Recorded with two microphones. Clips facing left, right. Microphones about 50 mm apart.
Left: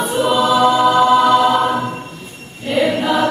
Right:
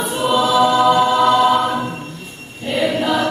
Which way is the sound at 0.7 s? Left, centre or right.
Centre.